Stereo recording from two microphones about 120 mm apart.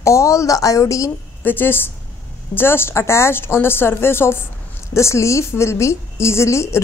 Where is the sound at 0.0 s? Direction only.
25° left (ahead or behind).